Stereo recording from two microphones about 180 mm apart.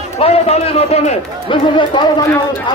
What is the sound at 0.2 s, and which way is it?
A man's voice, 35° left (ahead or behind).